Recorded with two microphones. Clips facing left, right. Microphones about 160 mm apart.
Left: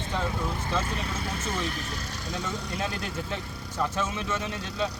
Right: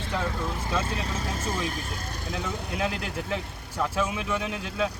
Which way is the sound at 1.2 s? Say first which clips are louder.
Right 1 dB; 40° right (ahead or behind).